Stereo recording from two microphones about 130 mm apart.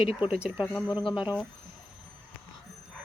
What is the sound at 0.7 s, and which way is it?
Speech, 5° left (ahead or behind).